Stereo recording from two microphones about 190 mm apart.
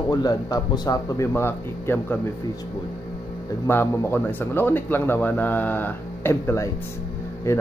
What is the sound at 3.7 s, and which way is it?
Speech, 15° left (ahead or behind).